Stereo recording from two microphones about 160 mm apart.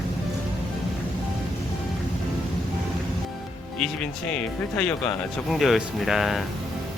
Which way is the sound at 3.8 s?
5° left (ahead or behind).